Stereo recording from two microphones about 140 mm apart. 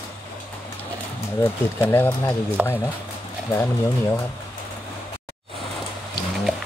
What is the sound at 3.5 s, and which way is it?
Speech, 20° left (ahead or behind).